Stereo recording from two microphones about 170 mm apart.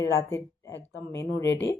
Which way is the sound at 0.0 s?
15° left (ahead or behind).